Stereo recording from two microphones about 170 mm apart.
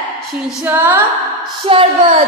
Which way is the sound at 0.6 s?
10° right (ahead or behind).